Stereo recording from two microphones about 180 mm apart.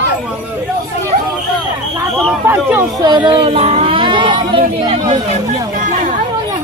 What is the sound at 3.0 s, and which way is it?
Speech, 25° right (ahead or behind).